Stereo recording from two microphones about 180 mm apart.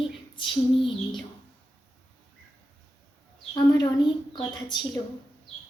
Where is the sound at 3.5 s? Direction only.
25° left (ahead or behind).